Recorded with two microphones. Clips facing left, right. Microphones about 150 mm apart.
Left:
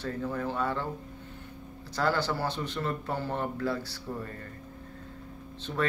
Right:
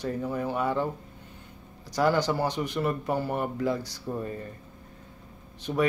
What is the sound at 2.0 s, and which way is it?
Speech, 15° right (ahead or behind).